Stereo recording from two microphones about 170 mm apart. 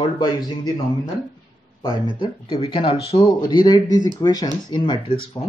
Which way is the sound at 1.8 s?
25° left (ahead or behind).